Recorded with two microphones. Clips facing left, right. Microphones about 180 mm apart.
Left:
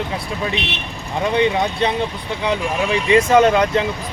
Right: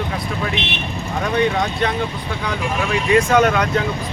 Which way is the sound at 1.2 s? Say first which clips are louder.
Left 2 dB; 20° left (ahead or behind).